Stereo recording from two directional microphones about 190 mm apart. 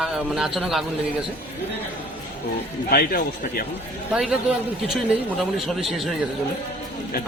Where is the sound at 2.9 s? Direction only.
50° left (ahead or behind).